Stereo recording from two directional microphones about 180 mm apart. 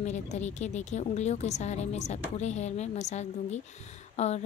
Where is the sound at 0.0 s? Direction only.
40° left (ahead or behind).